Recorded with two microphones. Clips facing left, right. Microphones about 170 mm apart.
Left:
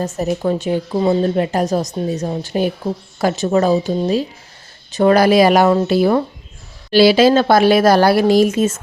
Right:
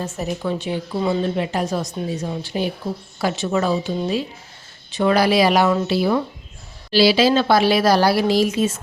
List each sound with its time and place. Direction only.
0.2 s a woman's voice: 45° left (ahead or behind)